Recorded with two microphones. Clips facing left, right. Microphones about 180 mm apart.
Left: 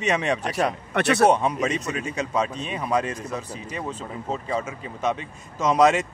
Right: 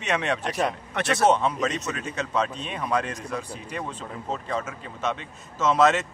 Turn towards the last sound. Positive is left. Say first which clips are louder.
# left 2 dB
turn(degrees=10)  # may be behind; listen again after turning